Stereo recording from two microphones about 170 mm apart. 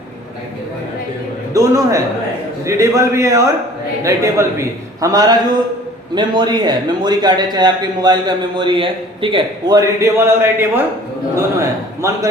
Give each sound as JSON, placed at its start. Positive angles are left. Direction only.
{"t": 1.5, "sound": "a man's voice", "side_deg": -20}